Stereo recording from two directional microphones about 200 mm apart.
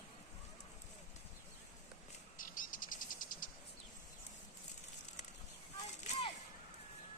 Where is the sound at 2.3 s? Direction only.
45° left (ahead or behind).